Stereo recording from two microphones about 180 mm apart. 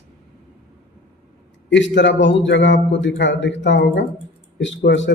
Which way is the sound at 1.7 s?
80° left.